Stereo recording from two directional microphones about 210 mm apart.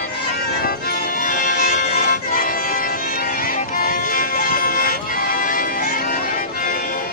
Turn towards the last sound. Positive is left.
turn(degrees=45)  # may be behind; listen again after turning